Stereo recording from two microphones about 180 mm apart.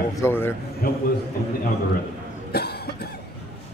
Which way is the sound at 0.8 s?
55° left (ahead or behind).